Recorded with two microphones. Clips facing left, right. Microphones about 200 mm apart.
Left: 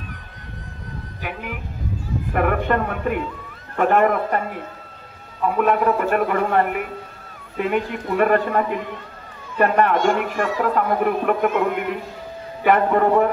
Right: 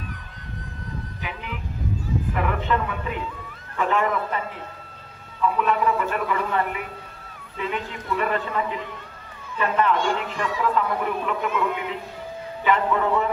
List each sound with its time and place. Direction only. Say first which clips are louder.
2.3 s speech: left 7 dB; 55° left (ahead or behind)